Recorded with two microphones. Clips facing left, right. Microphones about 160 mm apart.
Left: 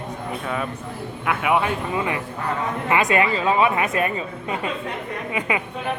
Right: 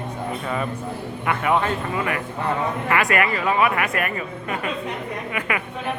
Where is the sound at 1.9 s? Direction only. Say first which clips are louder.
Even; 20° left (ahead or behind).